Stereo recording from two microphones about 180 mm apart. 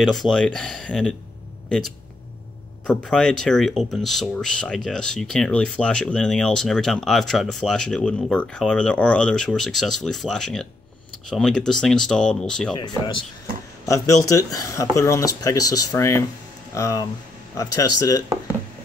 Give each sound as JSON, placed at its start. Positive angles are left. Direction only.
{"t": 0.0, "sound": "speech", "side_deg": 0}
{"t": 2.9, "sound": "speech", "side_deg": 5}
{"t": 12.7, "sound": "speech", "side_deg": 25}